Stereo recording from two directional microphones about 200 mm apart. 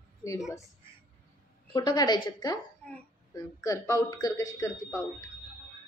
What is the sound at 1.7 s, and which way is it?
Speech, 20° left (ahead or behind).